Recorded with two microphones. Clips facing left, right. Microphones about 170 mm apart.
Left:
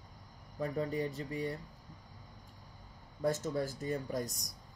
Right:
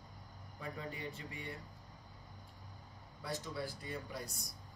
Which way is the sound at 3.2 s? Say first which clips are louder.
Left 9 dB; 45° left (ahead or behind).